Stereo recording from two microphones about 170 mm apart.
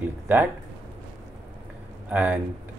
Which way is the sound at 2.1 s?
10° right (ahead or behind).